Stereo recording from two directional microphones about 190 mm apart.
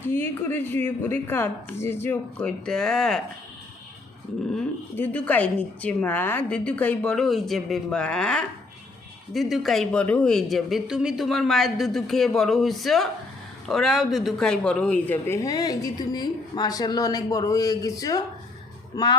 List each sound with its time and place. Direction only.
0.1 s speech: 10° left (ahead or behind)
4.5 s a woman's voice: 5° left (ahead or behind)